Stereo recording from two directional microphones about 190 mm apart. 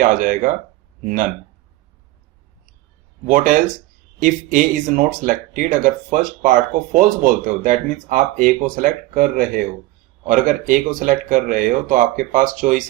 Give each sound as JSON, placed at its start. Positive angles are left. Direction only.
{"t": 0.0, "sound": "speech", "side_deg": -45}
{"t": 3.2, "sound": "speech", "side_deg": -45}